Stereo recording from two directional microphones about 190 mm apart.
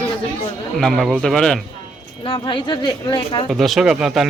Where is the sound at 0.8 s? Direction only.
Centre (ahead or behind).